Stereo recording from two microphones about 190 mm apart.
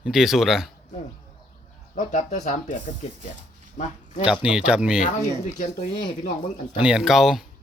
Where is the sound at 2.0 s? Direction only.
40° left (ahead or behind).